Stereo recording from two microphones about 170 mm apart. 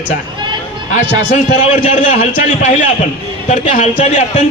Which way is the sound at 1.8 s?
50° left (ahead or behind).